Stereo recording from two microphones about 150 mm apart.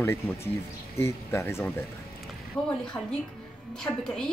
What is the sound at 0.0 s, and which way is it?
A woman's voice, 15° left (ahead or behind).